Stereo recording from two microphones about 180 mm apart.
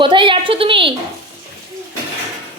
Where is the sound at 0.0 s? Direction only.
30° right (ahead or behind).